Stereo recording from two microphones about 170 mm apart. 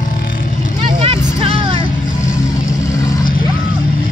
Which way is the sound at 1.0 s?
35° right (ahead or behind).